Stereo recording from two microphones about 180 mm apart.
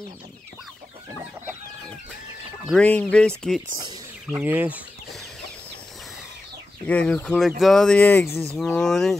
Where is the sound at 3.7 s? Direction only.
20° right (ahead or behind).